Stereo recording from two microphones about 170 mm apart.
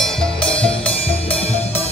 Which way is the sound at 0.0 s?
5° left (ahead or behind).